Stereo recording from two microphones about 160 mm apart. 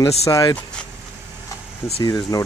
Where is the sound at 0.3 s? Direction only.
20° left (ahead or behind).